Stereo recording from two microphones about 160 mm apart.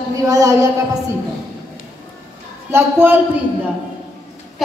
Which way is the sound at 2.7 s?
15° right (ahead or behind).